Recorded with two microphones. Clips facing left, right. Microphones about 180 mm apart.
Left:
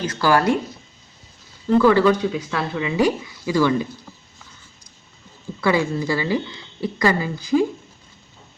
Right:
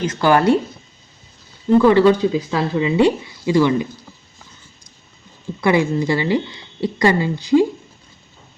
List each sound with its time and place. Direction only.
0.0 s speech: 20° right (ahead or behind)
1.8 s speech: 20° right (ahead or behind)
5.5 s speech: 20° right (ahead or behind)